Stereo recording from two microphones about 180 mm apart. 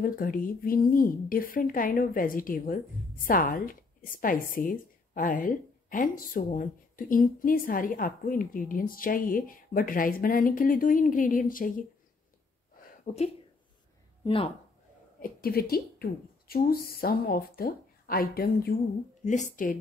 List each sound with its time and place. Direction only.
0.0 s speech: 50° left (ahead or behind)
13.0 s speech: 35° left (ahead or behind)
15.2 s speech: 55° left (ahead or behind)
19.2 s speech: 45° left (ahead or behind)